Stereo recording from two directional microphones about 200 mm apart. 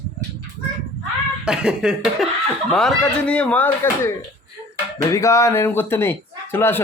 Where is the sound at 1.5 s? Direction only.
5° right (ahead or behind).